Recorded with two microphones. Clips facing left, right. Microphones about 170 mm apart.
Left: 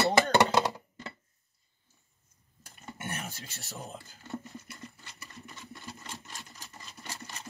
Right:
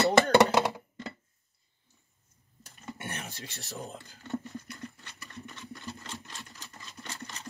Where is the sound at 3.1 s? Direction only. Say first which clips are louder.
Left 5 dB; 5° left (ahead or behind).